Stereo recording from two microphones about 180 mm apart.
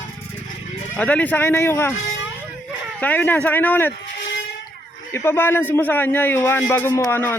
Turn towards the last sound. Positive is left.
turn(degrees=15)  # may be behind; listen again after turning